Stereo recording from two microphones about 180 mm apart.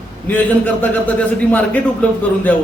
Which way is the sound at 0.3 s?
10° left (ahead or behind).